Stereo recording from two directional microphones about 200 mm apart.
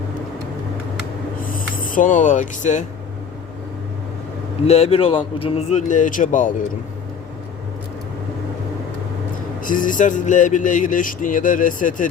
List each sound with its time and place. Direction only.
1.5 s speech: 45° left (ahead or behind)
4.6 s speech: 30° left (ahead or behind)
9.6 s speech: 40° left (ahead or behind)